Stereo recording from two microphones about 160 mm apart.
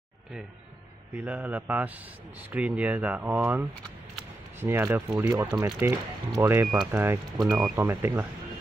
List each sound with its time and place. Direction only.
1.1 s speech: 10° right (ahead or behind)